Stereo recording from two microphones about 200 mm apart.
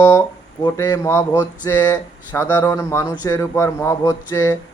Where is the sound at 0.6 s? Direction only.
20° left (ahead or behind).